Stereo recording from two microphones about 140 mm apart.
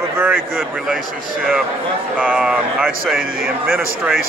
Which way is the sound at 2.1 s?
10° right (ahead or behind).